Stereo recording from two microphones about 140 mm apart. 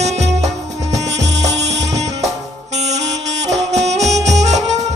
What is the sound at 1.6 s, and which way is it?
Music, 55° right (ahead or behind).